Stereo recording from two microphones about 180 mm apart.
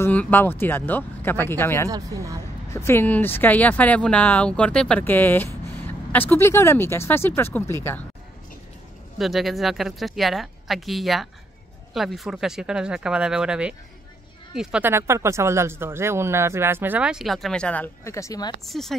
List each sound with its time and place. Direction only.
0.0 s speech: 10° left (ahead or behind)
1.9 s speech: 20° right (ahead or behind)
2.7 s speech: 15° left (ahead or behind)
9.2 s speech: centre (ahead or behind); by 18.5 s 20° left (ahead or behind)
18.7 s speech: centre (ahead or behind)